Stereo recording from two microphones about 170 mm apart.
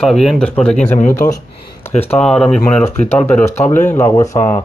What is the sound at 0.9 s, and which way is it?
Speech, 50° left (ahead or behind).